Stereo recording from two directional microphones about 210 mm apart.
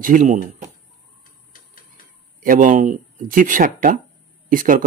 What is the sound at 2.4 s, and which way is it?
Speech, 40° right (ahead or behind).